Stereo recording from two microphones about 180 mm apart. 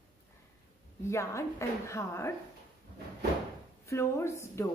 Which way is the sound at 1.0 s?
15° left (ahead or behind).